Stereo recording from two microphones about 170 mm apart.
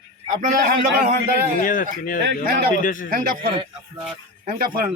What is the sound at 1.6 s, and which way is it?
Speech, 55° left (ahead or behind).